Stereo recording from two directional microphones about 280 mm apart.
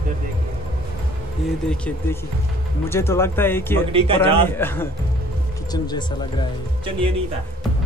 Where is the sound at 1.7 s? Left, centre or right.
Centre.